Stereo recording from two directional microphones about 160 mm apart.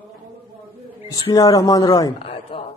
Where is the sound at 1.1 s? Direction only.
20° left (ahead or behind).